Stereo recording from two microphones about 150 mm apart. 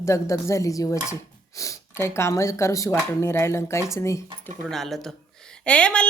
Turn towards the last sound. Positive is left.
turn(degrees=5)  # may be behind; listen again after turning